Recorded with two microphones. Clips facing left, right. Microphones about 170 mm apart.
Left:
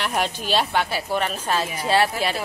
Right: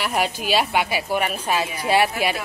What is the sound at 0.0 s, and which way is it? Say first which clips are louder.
A woman's voice: right 2 dB; 5° right (ahead or behind).